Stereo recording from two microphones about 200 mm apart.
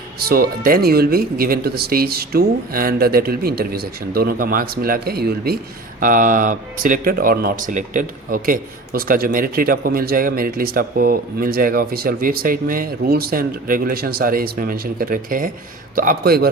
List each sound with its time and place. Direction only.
0.3 s speech: 45° right (ahead or behind)